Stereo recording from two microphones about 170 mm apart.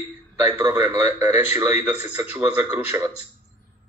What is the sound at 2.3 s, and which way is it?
Speech, 10° right (ahead or behind).